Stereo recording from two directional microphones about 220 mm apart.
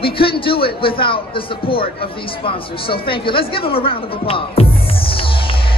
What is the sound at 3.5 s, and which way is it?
Music, 25° left (ahead or behind).